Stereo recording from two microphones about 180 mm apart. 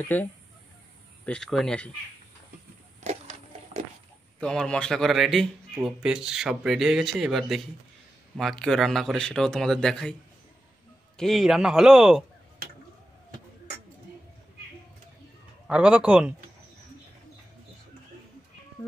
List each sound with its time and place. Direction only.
0.1 s a man's voice: 10° left (ahead or behind)
3.0 s a sound: 35° right (ahead or behind)
4.4 s a man's voice: 5° left (ahead or behind)
11.1 s a man's voice: centre (ahead or behind)
15.6 s a man's voice: 5° right (ahead or behind)